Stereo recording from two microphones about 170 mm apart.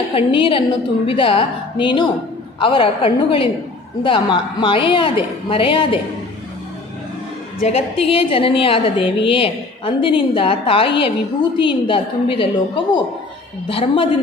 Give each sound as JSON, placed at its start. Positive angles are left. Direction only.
{"t": 0.1, "sound": "a woman's voice", "side_deg": 30}
{"t": 7.6, "sound": "a woman's voice", "side_deg": 35}
{"t": 13.7, "sound": "a woman's voice", "side_deg": 30}